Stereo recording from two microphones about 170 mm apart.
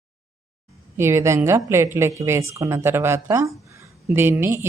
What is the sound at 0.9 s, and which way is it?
A woman's voice, 15° right (ahead or behind).